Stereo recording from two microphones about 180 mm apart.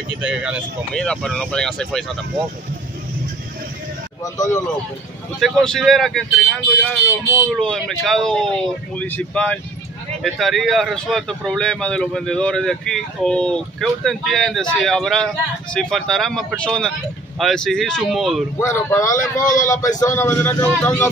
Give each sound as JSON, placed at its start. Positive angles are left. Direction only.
{"t": 0.2, "sound": "speech", "side_deg": -5}
{"t": 0.9, "sound": "speech", "side_deg": 5}
{"t": 4.2, "sound": "speech", "side_deg": 20}
{"t": 5.4, "sound": "speech", "side_deg": 0}
{"t": 18.6, "sound": "speech", "side_deg": 15}
{"t": 19.4, "sound": "speech", "side_deg": 45}
{"t": 19.7, "sound": "speech", "side_deg": 20}